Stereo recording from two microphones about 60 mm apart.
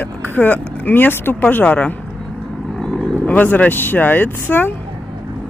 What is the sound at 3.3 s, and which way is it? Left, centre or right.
Speech, left.